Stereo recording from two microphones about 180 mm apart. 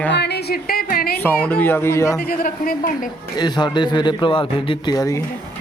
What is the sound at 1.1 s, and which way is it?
Speech, 10° left (ahead or behind).